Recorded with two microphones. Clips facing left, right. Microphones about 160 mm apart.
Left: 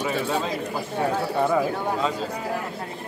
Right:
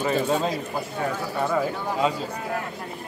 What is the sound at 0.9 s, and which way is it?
Speech, 30° left (ahead or behind).